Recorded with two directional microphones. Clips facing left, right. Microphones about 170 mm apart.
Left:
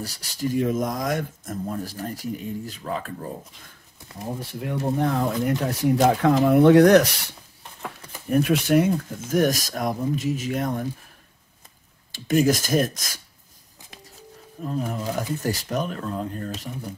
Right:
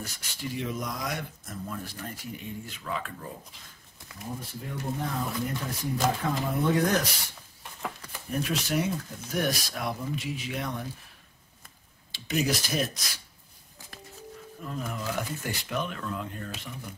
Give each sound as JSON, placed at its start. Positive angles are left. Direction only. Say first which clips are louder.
{"t": 0.0, "sound": "speech", "louder": "left 9 dB", "side_deg": 35}
{"t": 4.4, "sound": "speech", "louder": "left 9 dB", "side_deg": 75}
{"t": 8.3, "sound": "speech", "louder": "left 10 dB", "side_deg": 60}
{"t": 12.1, "sound": "speech", "louder": "left 8 dB", "side_deg": 45}
{"t": 14.6, "sound": "speech", "louder": "left 7 dB", "side_deg": 35}